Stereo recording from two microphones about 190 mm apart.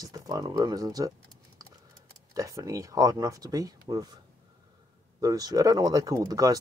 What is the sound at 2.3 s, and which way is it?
Speech, 20° right (ahead or behind).